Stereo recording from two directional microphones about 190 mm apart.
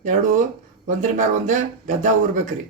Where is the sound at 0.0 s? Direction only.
40° right (ahead or behind).